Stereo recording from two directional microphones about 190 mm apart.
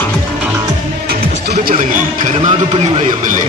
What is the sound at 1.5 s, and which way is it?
Music, 40° right (ahead or behind).